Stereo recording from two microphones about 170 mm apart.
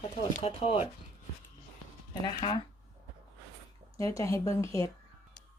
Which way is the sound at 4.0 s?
20° left (ahead or behind).